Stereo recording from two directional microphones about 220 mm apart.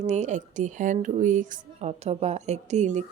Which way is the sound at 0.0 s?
35° right (ahead or behind).